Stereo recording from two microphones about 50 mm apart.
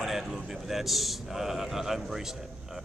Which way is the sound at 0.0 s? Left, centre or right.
Centre.